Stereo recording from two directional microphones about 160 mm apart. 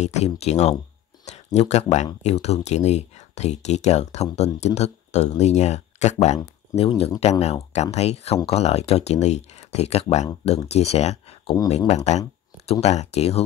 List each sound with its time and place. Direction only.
0.0 s speech: 45° left (ahead or behind)